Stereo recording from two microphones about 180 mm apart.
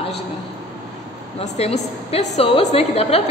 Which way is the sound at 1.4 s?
35° left (ahead or behind).